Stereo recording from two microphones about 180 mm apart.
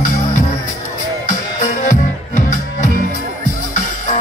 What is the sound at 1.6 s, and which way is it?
Music, 45° left (ahead or behind).